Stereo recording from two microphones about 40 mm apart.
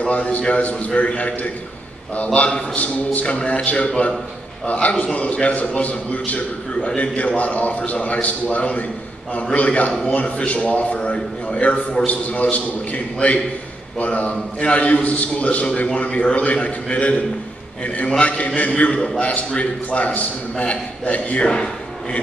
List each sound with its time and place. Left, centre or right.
0.0 s a man's voice: left
10.0 s a man's voice: left
21.4 s speech: left